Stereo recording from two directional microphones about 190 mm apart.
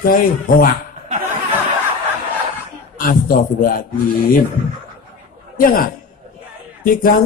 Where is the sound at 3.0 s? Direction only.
45° left (ahead or behind).